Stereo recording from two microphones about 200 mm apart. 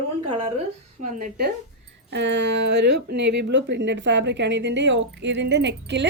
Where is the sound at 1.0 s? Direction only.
40° right (ahead or behind).